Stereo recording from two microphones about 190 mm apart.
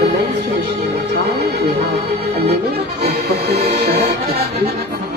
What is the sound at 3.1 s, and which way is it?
Music, 55° right (ahead or behind).